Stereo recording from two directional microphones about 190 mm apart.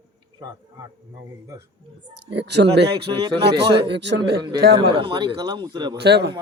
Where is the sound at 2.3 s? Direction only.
65° right (ahead or behind).